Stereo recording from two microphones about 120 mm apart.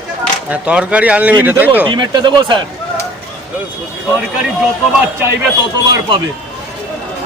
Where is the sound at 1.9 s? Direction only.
40° right (ahead or behind).